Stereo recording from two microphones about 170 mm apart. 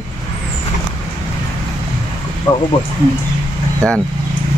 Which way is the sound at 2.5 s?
25° left (ahead or behind).